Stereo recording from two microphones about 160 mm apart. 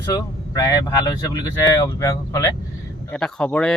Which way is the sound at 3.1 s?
5° left (ahead or behind).